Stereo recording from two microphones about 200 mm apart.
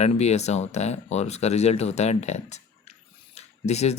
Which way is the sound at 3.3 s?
35° left (ahead or behind).